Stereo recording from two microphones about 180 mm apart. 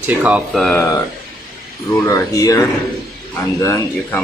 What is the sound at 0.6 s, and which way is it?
Speech, 15° left (ahead or behind).